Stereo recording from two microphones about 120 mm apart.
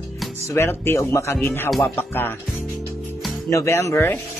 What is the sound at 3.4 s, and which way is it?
Speech, 20° left (ahead or behind).